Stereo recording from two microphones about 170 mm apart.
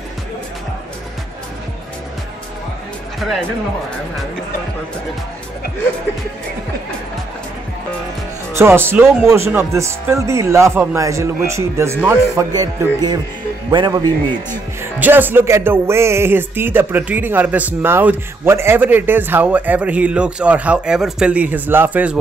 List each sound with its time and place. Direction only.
3.2 s speech: centre (ahead or behind)
8.5 s music: 15° right (ahead or behind)
12.5 s music: 25° right (ahead or behind)
14.8 s music: 10° right (ahead or behind)